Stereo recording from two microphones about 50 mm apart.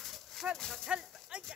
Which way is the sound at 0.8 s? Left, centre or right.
Right.